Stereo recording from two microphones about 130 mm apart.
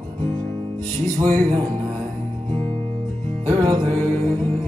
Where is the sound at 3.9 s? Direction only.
10° left (ahead or behind).